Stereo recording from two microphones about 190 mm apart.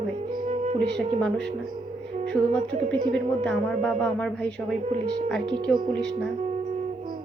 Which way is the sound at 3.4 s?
5° left (ahead or behind).